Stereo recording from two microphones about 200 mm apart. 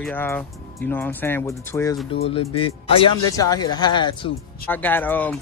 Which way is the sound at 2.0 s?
30° left (ahead or behind).